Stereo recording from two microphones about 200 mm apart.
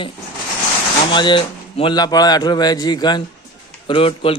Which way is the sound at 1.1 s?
25° left (ahead or behind).